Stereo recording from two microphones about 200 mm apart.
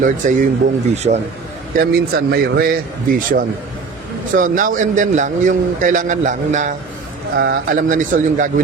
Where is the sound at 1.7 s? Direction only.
45° right (ahead or behind).